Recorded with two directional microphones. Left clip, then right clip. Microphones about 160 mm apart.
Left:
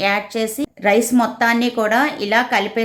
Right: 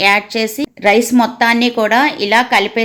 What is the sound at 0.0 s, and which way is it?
A woman's voice, 15° right (ahead or behind).